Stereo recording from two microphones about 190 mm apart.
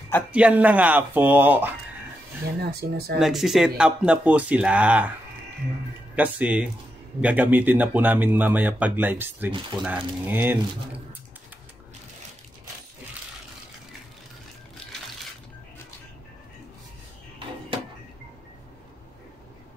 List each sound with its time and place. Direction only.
0.3 s speech: 5° right (ahead or behind)
2.6 s speech: 55° right (ahead or behind)
3.2 s speech: centre (ahead or behind)
6.1 s speech: 10° right (ahead or behind)